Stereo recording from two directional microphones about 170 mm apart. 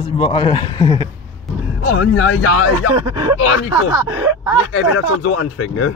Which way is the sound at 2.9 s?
25° right (ahead or behind).